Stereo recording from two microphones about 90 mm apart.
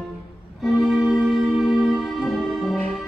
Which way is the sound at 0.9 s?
5° right (ahead or behind).